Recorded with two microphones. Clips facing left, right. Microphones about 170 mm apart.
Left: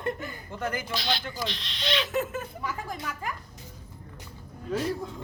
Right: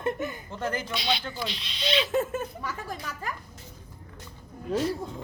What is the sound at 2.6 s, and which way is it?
Speech, 15° left (ahead or behind).